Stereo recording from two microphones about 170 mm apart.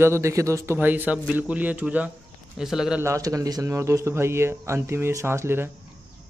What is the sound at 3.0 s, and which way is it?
A man's voice, 20° right (ahead or behind).